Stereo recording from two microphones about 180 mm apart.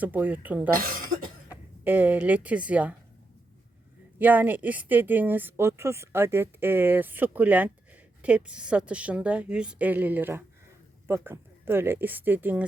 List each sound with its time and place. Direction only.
0.0 s speech: 10° right (ahead or behind)
0.7 s speech: 50° right (ahead or behind)
1.5 s speech: 10° right (ahead or behind)
4.2 s speech: 10° right (ahead or behind)